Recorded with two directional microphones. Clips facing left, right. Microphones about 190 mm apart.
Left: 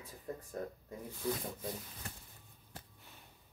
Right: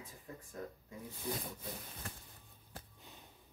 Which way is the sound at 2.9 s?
20° right (ahead or behind).